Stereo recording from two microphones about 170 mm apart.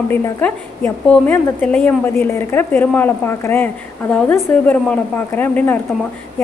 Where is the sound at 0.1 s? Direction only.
10° left (ahead or behind).